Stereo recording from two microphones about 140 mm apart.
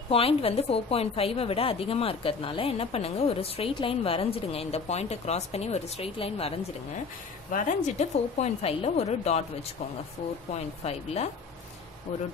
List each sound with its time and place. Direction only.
0.1 s a woman's voice: 45° left (ahead or behind)
7.5 s a woman's voice: 60° left (ahead or behind)
10.8 s a woman's voice: 50° left (ahead or behind)